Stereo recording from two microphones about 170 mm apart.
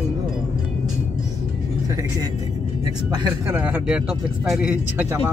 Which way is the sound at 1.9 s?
20° right (ahead or behind).